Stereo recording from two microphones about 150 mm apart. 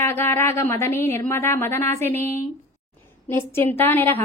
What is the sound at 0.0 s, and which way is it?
A woman's voice, 15° left (ahead or behind).